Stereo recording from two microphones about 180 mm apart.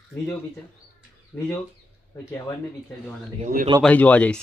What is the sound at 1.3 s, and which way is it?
Speech, 15° left (ahead or behind).